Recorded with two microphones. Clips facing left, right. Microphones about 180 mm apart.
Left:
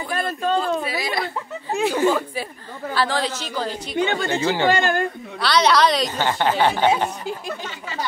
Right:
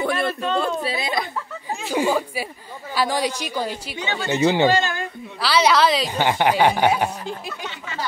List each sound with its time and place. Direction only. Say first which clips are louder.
0.0 s a sound: right 2 dB; 75° right (ahead or behind)
0.8 s a woman's voice: even; 25° right (ahead or behind)
4.0 s speech: left 3 dB; 55° left (ahead or behind)
4.4 s a woman's voice: right 7 dB; 15° right (ahead or behind)
4.7 s speech: left 2 dB; 55° left (ahead or behind)
5.4 s a woman's voice: even; 5° right (ahead or behind)